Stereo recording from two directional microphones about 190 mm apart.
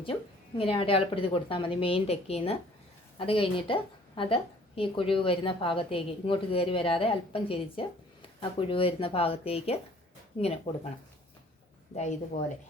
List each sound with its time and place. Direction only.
0.0 s a woman's voice: 30° left (ahead or behind)
11.9 s speech: 35° left (ahead or behind)